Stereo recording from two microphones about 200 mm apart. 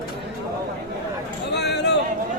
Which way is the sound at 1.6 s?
55° left (ahead or behind).